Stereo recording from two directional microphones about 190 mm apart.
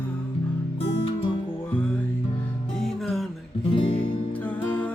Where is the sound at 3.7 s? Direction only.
25° left (ahead or behind).